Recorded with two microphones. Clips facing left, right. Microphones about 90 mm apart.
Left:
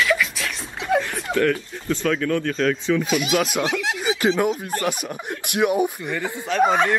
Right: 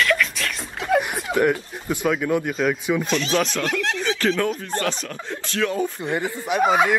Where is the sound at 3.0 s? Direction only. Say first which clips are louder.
Left 1 dB; 10° left (ahead or behind).